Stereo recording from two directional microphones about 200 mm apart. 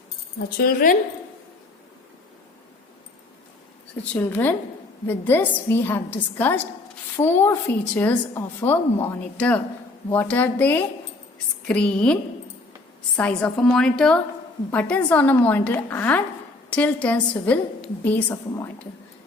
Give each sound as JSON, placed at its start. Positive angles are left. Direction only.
{"t": 0.6, "sound": "a woman's voice", "side_deg": 45}
{"t": 4.1, "sound": "a woman's voice", "side_deg": 10}
{"t": 13.1, "sound": "a woman's voice", "side_deg": 5}